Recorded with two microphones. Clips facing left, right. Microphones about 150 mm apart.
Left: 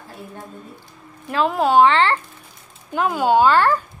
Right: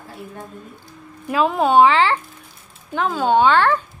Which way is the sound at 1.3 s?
Centre (ahead or behind).